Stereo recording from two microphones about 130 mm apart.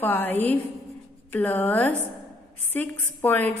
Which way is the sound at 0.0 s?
15° left (ahead or behind).